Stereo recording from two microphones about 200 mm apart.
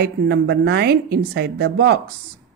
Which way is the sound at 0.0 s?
55° right (ahead or behind).